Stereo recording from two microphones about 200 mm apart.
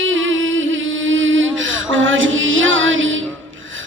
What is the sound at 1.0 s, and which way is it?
Music, 75° right (ahead or behind).